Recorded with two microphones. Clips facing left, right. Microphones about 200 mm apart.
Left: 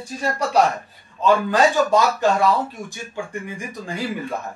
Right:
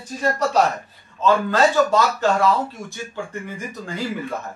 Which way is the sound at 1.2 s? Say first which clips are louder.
Even; 15° left (ahead or behind).